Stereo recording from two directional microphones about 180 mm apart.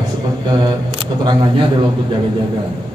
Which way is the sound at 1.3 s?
25° right (ahead or behind).